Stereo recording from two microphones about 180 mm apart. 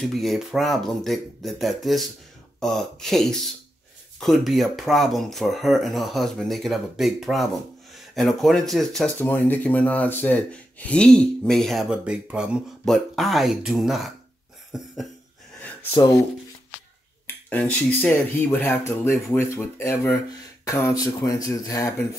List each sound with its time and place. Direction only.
0.0 s speech: centre (ahead or behind)
15.6 s a sound: 15° left (ahead or behind)
17.5 s speech: 10° left (ahead or behind)